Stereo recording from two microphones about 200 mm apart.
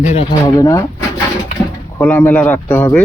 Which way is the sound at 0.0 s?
35° left (ahead or behind).